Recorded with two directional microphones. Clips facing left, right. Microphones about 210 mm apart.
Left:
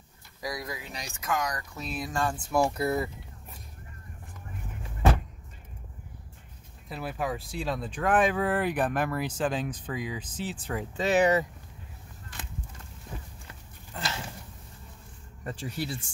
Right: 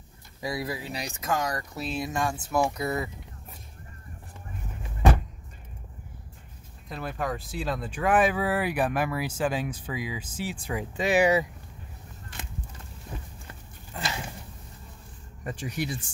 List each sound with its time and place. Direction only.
0.4 s speech: 30° right (ahead or behind)
2.5 s speech: centre (ahead or behind)
6.9 s speech: 5° left (ahead or behind); by 11.4 s 10° right (ahead or behind)
13.9 s a sound: 10° right (ahead or behind)
15.4 s speech: 15° right (ahead or behind)